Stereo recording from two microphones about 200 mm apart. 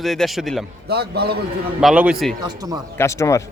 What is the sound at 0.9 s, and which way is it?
Speech, 55° right (ahead or behind).